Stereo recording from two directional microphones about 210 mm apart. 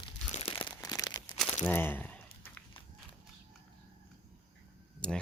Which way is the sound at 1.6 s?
10° left (ahead or behind).